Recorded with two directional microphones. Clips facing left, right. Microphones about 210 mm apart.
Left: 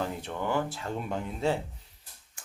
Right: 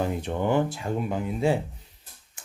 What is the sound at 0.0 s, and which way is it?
Speech, 15° right (ahead or behind).